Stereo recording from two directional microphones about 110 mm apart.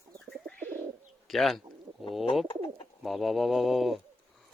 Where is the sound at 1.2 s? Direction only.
Centre (ahead or behind).